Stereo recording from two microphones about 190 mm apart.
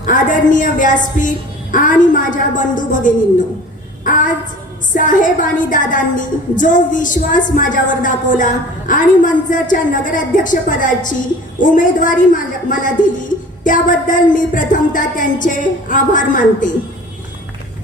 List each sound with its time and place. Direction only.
0.0 s a woman's voice: 45° left (ahead or behind)
4.9 s a woman's voice: 45° left (ahead or behind)